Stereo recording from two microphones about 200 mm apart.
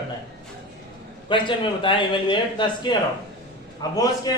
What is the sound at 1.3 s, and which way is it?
A man's voice, 25° left (ahead or behind).